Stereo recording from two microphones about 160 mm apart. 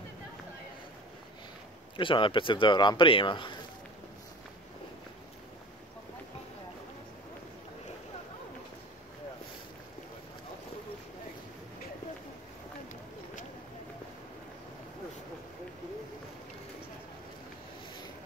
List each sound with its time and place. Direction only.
2.0 s speech: 30° left (ahead or behind)